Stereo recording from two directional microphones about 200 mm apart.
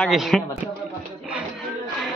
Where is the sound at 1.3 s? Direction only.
5° right (ahead or behind).